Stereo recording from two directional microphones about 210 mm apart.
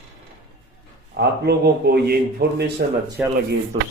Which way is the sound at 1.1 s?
50° right (ahead or behind).